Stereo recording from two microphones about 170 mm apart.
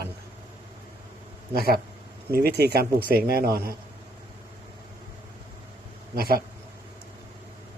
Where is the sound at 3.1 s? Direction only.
60° right (ahead or behind).